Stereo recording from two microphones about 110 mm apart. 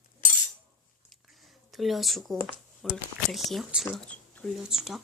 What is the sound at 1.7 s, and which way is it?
Speech, centre (ahead or behind).